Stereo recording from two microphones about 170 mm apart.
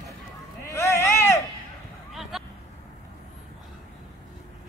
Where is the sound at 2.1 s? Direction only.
Centre (ahead or behind).